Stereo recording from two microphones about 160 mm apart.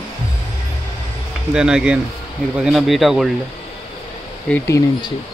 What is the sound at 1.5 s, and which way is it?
Speech, 5° right (ahead or behind).